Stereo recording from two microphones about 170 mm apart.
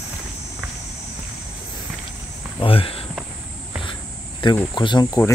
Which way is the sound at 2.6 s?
35° left (ahead or behind).